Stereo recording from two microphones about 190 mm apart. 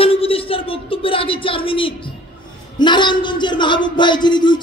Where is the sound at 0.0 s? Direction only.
30° left (ahead or behind).